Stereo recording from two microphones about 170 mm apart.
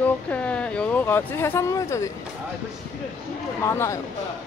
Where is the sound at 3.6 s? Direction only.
15° left (ahead or behind).